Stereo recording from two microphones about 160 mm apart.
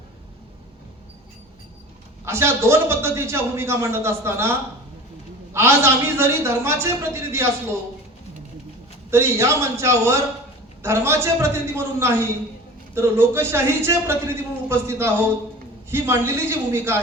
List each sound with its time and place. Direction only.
2.2 s a man's voice: 15° right (ahead or behind)
5.5 s a man's voice: 15° right (ahead or behind)
9.0 s a man's voice: 15° right (ahead or behind)